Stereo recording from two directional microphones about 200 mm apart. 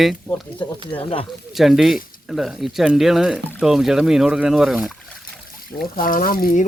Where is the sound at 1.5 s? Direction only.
Centre (ahead or behind).